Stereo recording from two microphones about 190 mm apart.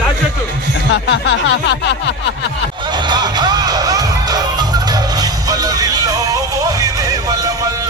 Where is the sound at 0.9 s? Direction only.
85° left; by 2.1 s 65° left (ahead or behind).